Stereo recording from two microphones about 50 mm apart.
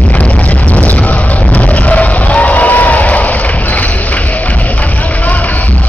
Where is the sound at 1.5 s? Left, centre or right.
Left.